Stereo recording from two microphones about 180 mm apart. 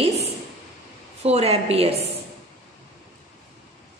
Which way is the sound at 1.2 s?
35° right (ahead or behind).